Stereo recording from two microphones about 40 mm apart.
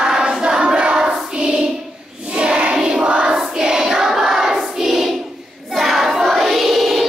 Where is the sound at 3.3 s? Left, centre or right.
Centre.